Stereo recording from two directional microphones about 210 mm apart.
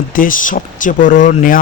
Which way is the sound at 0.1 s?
40° left (ahead or behind).